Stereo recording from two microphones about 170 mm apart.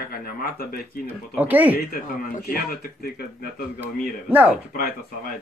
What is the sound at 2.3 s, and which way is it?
Speech, 60° left (ahead or behind).